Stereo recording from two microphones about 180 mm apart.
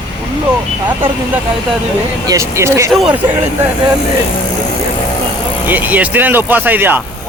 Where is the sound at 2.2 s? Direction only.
15° right (ahead or behind).